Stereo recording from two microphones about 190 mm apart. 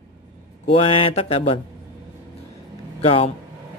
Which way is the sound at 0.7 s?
30° left (ahead or behind).